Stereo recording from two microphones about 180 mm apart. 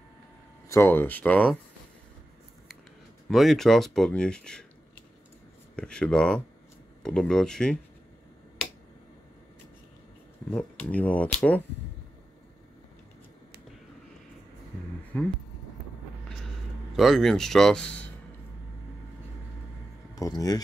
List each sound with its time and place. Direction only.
0.7 s speech: 15° left (ahead or behind)
3.3 s speech: centre (ahead or behind)
5.8 s speech: 5° left (ahead or behind)
10.5 s speech: 5° left (ahead or behind)
15.1 s speech: 10° left (ahead or behind)
16.9 s speech: centre (ahead or behind)
20.2 s speech: 20° left (ahead or behind)